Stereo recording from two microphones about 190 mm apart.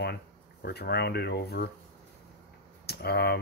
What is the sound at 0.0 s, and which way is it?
Speech, 60° left (ahead or behind).